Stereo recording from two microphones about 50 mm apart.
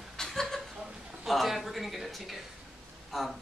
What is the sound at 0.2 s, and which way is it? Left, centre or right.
Chuckle, centre.